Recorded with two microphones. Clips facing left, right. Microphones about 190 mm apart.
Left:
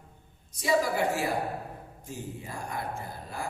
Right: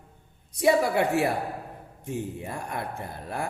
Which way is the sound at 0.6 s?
65° right (ahead or behind).